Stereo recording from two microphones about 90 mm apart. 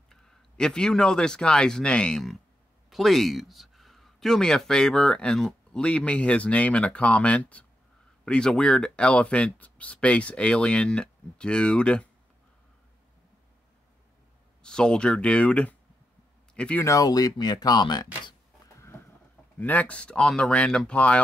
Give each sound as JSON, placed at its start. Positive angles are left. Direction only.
{"t": 0.1, "sound": "speech", "side_deg": 5}
{"t": 14.6, "sound": "speech", "side_deg": 10}
{"t": 16.8, "sound": "speech", "side_deg": 40}
{"t": 18.8, "sound": "a sound", "side_deg": 30}
{"t": 19.6, "sound": "speech", "side_deg": 15}